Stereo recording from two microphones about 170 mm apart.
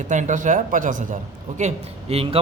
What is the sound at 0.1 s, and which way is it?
A man's voice, 45° right (ahead or behind).